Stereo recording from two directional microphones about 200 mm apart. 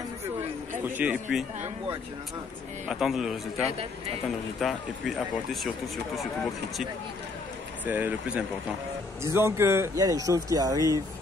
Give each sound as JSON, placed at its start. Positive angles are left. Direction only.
{"t": 0.9, "sound": "speech", "side_deg": -5}
{"t": 2.9, "sound": "speech", "side_deg": 0}